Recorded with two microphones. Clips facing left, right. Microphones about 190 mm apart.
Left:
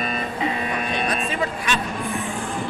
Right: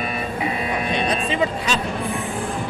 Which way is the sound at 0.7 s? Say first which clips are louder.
Right 2 dB; 20° right (ahead or behind).